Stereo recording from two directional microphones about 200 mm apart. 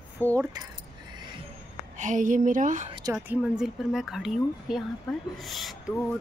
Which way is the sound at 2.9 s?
15° right (ahead or behind).